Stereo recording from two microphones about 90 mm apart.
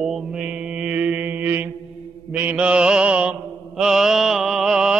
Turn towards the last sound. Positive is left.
turn(degrees=-5)  # may be behind; listen again after turning